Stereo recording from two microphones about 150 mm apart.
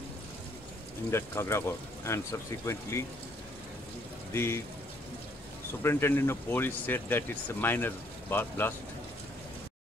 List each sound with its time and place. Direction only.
1.1 s speech: 15° left (ahead or behind)
4.3 s speech: 15° left (ahead or behind)
5.8 s speech: 15° left (ahead or behind)